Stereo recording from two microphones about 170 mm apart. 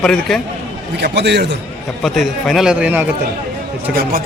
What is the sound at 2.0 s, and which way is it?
Speech, centre (ahead or behind).